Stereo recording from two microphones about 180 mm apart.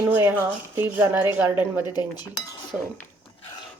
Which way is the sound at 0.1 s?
10° right (ahead or behind).